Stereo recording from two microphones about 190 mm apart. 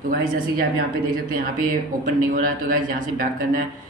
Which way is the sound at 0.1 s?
50° right (ahead or behind).